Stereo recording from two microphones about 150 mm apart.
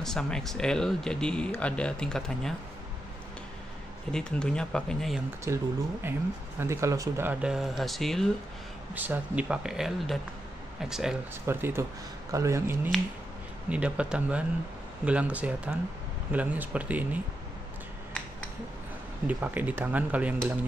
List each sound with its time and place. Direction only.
0.0 s speech: 5° left (ahead or behind)
4.1 s speech: 5° left (ahead or behind)
5.5 s speech: 20° right (ahead or behind)
7.4 s speech: centre (ahead or behind)
8.9 s speech: 10° right (ahead or behind)
11.4 s speech: 15° right (ahead or behind)
19.2 s speech: 10° right (ahead or behind)